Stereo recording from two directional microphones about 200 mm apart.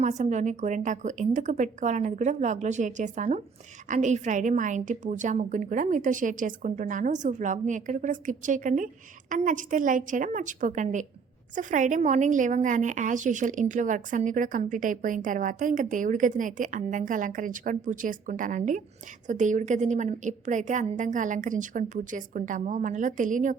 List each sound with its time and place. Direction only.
0.0 s a woman's voice: 35° right (ahead or behind)